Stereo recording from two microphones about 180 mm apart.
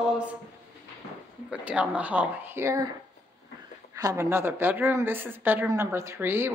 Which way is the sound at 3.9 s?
15° right (ahead or behind).